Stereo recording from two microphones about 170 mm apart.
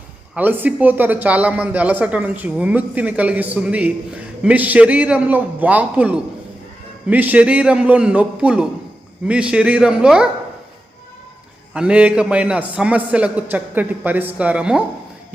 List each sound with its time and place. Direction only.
0.3 s a man's voice: 10° right (ahead or behind)
11.7 s speech: 5° right (ahead or behind)